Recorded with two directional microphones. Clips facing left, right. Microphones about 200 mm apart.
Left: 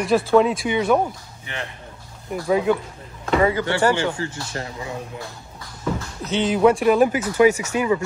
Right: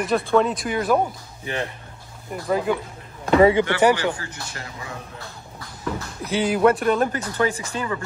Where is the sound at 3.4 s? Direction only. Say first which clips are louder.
Right 4 dB; 25° right (ahead or behind).